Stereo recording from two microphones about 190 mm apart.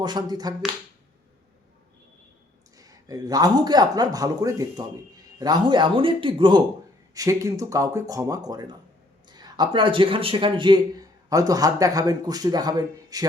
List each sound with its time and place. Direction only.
0.0 s a man's voice: 20° right (ahead or behind)
2.7 s a man's voice: 20° right (ahead or behind)